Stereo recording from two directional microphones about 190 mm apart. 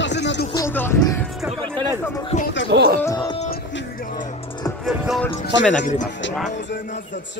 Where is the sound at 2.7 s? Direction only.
60° right (ahead or behind).